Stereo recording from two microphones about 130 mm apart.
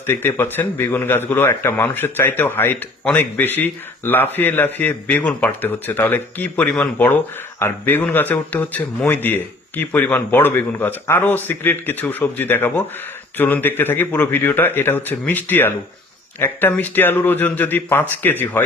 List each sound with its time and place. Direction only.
0.1 s speech: 20° left (ahead or behind)